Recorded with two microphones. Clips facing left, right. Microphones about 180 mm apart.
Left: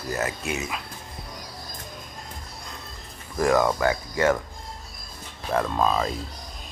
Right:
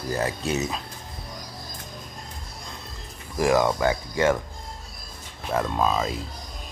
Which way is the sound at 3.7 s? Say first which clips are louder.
Even; 25° right (ahead or behind).